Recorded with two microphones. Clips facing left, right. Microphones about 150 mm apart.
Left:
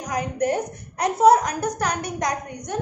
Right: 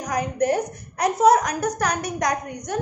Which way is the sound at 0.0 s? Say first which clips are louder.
Right 1 dB; 25° left (ahead or behind).